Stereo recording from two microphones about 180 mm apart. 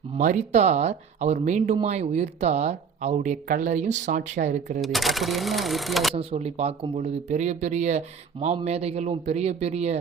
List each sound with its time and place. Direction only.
0.1 s speech: 40° right (ahead or behind)
4.8 s speech: centre (ahead or behind)
6.1 s speech: 35° right (ahead or behind)